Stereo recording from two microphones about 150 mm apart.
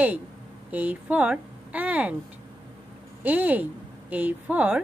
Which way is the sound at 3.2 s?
10° right (ahead or behind).